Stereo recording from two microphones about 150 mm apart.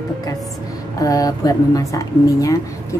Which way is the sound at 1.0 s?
25° left (ahead or behind).